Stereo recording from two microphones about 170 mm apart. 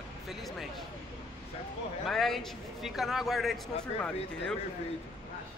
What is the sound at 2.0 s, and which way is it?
Speech, centre (ahead or behind).